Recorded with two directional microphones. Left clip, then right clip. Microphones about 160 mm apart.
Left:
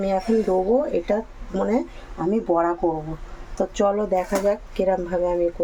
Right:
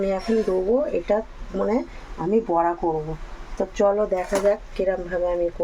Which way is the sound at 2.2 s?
10° left (ahead or behind).